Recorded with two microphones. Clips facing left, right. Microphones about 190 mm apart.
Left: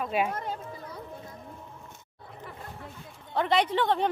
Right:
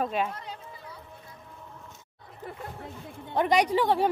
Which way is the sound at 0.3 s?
50° left (ahead or behind).